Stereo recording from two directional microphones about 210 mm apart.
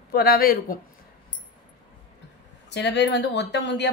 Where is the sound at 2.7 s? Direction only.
55° left (ahead or behind).